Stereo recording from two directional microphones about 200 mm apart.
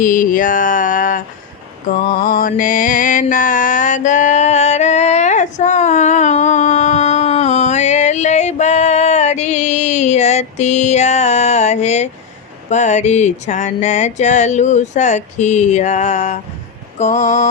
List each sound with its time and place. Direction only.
0.0 s mantra: 40° left (ahead or behind)
12.7 s music: 35° left (ahead or behind)